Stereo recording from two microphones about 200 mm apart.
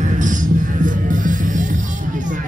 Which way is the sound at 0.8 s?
40° right (ahead or behind).